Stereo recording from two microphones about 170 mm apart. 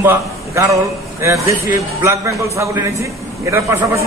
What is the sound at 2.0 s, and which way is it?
A man's voice, 15° right (ahead or behind).